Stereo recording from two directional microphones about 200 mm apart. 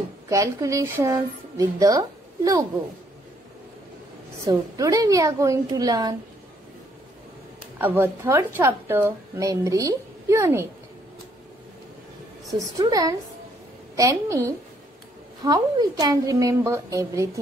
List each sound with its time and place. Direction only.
0.3 s a woman's voice: 15° right (ahead or behind)
4.5 s a woman's voice: 15° right (ahead or behind)
7.8 s a woman's voice: 10° right (ahead or behind)
12.5 s a woman's voice: 15° right (ahead or behind)